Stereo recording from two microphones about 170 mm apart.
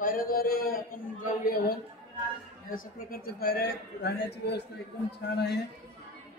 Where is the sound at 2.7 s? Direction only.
60° left (ahead or behind).